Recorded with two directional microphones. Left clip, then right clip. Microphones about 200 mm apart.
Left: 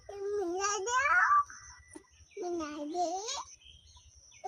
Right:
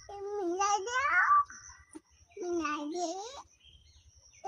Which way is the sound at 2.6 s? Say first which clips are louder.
Left 2 dB; 5° left (ahead or behind).